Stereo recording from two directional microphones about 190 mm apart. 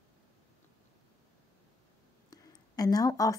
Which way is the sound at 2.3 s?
20° left (ahead or behind).